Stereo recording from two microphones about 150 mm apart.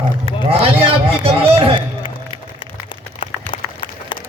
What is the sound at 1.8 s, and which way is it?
Music, 35° left (ahead or behind).